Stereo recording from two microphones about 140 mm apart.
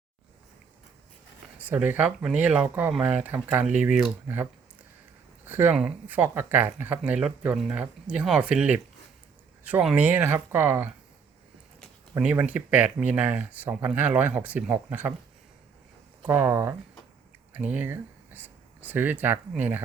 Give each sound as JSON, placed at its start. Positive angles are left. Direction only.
{"t": 1.5, "sound": "speech", "side_deg": -10}
{"t": 5.5, "sound": "speech", "side_deg": -15}
{"t": 12.1, "sound": "speech", "side_deg": -10}
{"t": 16.2, "sound": "speech", "side_deg": -15}